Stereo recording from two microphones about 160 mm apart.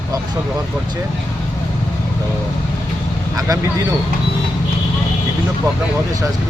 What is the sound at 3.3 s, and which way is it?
Speech, 20° right (ahead or behind).